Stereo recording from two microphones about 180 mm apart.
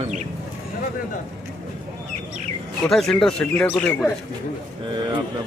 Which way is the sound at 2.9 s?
Centre (ahead or behind).